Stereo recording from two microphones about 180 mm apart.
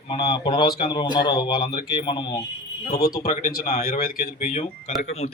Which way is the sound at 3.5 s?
55° left (ahead or behind).